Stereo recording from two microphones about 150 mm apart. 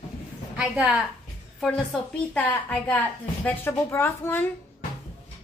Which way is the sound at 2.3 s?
10° left (ahead or behind).